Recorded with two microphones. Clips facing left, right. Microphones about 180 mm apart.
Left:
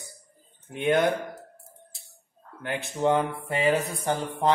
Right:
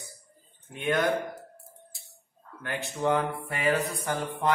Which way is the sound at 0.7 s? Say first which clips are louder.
Left 4 dB; 25° left (ahead or behind).